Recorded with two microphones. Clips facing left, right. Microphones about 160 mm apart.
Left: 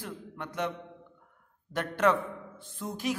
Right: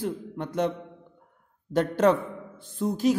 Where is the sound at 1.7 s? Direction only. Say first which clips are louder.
Right 5 dB; 40° right (ahead or behind).